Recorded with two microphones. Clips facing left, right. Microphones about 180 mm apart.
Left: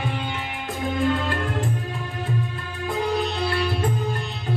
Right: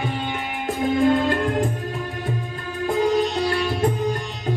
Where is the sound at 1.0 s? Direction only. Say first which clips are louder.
Right 5 dB; 45° right (ahead or behind).